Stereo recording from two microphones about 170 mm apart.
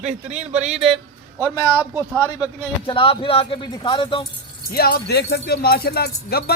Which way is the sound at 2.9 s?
30° left (ahead or behind).